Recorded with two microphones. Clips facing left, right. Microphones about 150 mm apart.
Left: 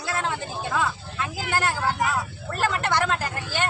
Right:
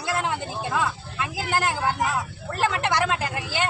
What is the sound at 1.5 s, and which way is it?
Speech, 15° right (ahead or behind).